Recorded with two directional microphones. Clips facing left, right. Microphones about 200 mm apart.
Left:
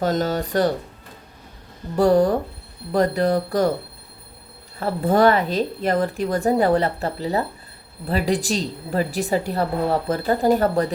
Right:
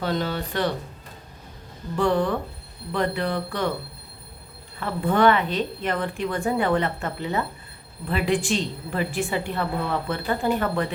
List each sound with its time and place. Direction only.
0.0 s speech: 45° left (ahead or behind)
2.0 s a woman's voice: 40° left (ahead or behind)
4.8 s a woman's voice: 40° left (ahead or behind)